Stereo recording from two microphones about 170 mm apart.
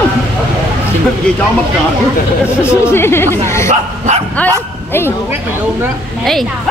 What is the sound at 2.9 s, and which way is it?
Speech, 15° left (ahead or behind).